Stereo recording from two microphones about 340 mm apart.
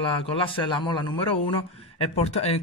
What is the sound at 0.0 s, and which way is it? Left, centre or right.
A man's voice, centre.